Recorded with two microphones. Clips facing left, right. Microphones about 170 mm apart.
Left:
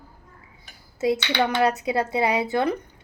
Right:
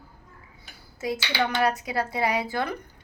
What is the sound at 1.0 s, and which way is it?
A woman's voice, 25° left (ahead or behind).